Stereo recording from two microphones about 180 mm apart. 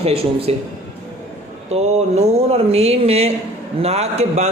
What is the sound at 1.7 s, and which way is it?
A man's voice, 35° right (ahead or behind).